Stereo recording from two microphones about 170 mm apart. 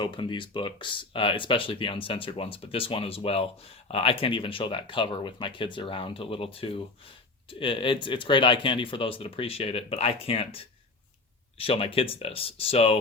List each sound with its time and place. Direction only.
0.0 s speech: 30° left (ahead or behind)